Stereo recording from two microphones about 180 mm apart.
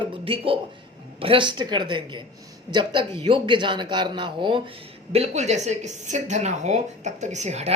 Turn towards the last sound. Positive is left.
turn(degrees=-40)  # may be behind; listen again after turning